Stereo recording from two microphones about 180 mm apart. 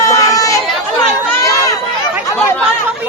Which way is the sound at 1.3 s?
15° left (ahead or behind).